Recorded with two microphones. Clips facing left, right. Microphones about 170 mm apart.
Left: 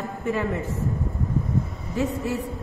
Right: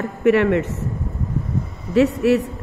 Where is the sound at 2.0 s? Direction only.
80° right.